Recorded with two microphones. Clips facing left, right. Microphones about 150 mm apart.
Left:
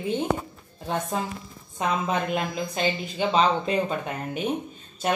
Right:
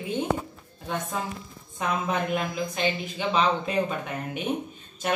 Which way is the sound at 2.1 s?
30° left (ahead or behind).